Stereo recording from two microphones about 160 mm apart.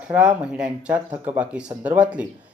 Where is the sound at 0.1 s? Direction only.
5° right (ahead or behind).